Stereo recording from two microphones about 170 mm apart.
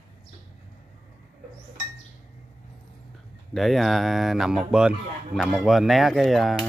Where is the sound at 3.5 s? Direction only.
Centre (ahead or behind).